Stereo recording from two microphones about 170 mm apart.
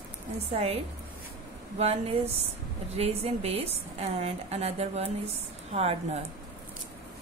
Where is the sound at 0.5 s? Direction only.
35° right (ahead or behind).